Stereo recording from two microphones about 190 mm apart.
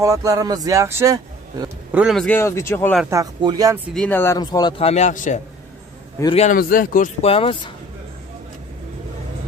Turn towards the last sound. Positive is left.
turn(degrees=30)  # may be behind; listen again after turning